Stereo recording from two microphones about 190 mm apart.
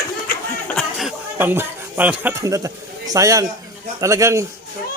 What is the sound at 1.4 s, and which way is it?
A man's voice, 10° right (ahead or behind).